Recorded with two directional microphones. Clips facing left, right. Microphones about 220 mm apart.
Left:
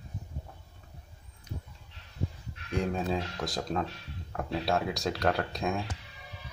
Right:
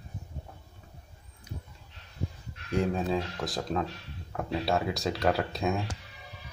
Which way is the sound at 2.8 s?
Centre (ahead or behind).